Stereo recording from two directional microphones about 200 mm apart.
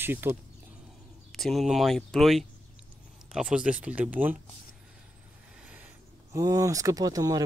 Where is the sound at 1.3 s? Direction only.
Centre (ahead or behind).